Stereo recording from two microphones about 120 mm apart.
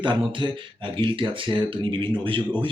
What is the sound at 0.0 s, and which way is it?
A man's voice, 40° right (ahead or behind).